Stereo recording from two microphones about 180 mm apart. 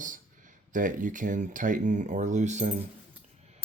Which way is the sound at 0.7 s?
45° right (ahead or behind).